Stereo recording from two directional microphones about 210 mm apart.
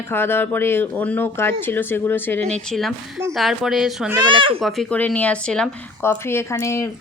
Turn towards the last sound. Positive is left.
turn(degrees=15)  # may be behind; listen again after turning